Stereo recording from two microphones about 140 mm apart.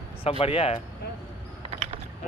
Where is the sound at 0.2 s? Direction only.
45° left (ahead or behind).